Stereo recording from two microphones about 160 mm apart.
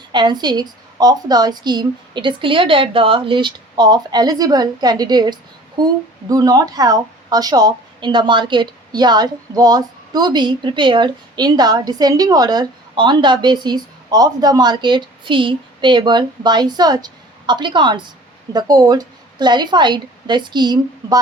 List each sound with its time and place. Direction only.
0.1 s a woman's voice: 30° right (ahead or behind)